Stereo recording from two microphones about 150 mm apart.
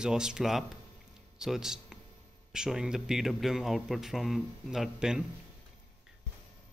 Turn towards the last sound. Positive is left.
turn(degrees=-5)  # may be behind; listen again after turning